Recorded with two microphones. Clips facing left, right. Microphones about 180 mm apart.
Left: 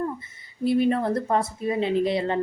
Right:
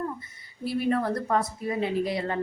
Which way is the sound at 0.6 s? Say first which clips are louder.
Left 5 dB; 20° left (ahead or behind).